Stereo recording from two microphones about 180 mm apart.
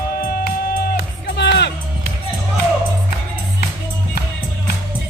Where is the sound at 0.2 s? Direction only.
55° left (ahead or behind).